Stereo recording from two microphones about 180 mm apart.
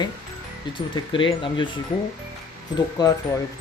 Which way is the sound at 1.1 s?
25° left (ahead or behind).